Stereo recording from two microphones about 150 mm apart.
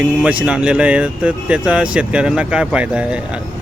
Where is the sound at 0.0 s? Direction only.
10° right (ahead or behind).